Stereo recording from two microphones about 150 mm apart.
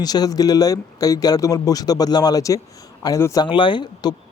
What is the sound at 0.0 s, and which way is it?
Speech, 25° left (ahead or behind).